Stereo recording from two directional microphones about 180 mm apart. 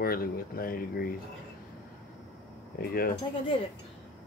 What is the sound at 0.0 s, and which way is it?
Speech, 55° left (ahead or behind).